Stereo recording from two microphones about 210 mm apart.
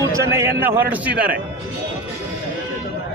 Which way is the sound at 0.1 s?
10° right (ahead or behind).